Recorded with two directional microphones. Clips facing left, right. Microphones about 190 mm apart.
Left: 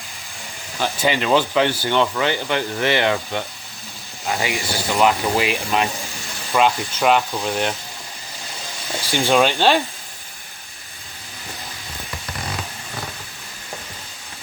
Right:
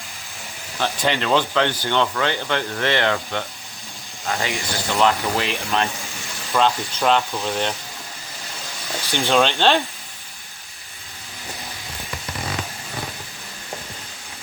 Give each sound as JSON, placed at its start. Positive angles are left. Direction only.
{"t": 0.8, "sound": "speech", "side_deg": 5}
{"t": 9.1, "sound": "speech", "side_deg": 10}